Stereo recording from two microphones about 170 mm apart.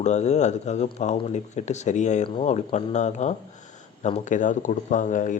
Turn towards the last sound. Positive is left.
turn(degrees=50)  # may be behind; listen again after turning